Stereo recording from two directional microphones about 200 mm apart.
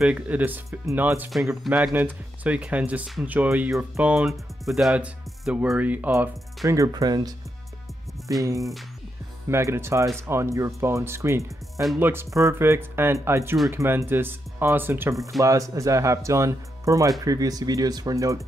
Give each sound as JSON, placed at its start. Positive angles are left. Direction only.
{"t": 0.0, "sound": "speech", "side_deg": -5}
{"t": 8.4, "sound": "speech", "side_deg": -15}